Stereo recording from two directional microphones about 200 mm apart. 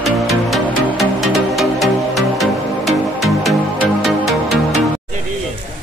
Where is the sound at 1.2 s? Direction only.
Centre (ahead or behind).